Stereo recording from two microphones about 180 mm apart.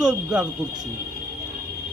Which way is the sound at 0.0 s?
5° right (ahead or behind).